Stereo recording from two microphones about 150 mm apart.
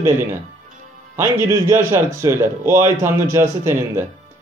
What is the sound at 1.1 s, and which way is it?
Speech, 20° right (ahead or behind).